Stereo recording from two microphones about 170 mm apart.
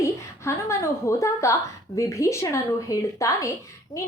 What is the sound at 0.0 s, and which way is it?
A woman's voice, 15° left (ahead or behind).